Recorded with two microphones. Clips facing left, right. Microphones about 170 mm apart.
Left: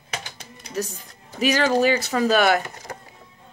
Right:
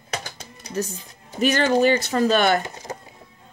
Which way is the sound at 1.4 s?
Centre (ahead or behind).